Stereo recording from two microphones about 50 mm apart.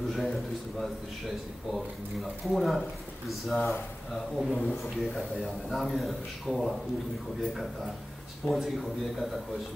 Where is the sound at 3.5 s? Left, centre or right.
Left.